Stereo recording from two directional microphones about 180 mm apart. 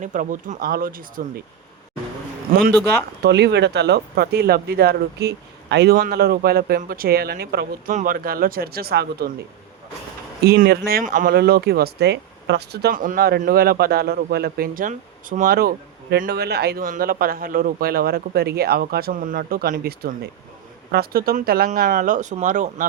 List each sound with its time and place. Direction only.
0.0 s speech: 45° right (ahead or behind)
2.5 s speech: 55° right (ahead or behind)
3.2 s speech: 70° right (ahead or behind)
10.4 s speech: 60° right (ahead or behind); by 22.9 s 45° right (ahead or behind)